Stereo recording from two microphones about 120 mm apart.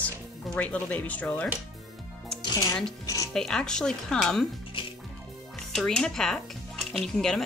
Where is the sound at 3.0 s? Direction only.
30° left (ahead or behind).